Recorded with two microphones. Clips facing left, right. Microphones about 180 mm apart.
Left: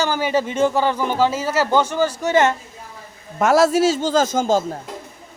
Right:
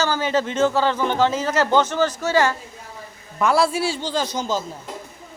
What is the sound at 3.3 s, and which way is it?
A man's voice, 45° left (ahead or behind).